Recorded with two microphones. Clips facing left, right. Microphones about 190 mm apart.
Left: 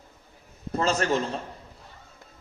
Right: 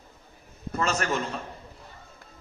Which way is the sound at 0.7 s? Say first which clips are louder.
Left 3 dB; 30° left (ahead or behind).